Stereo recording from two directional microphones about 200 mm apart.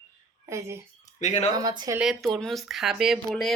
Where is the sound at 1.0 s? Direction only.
35° left (ahead or behind).